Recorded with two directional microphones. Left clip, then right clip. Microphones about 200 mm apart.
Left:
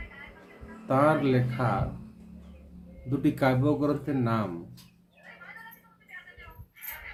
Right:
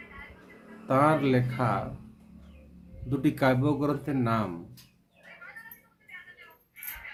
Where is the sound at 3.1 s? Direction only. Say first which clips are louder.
Even; 15° right (ahead or behind).